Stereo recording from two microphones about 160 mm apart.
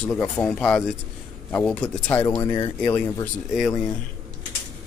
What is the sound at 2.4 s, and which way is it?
Speech, 25° left (ahead or behind).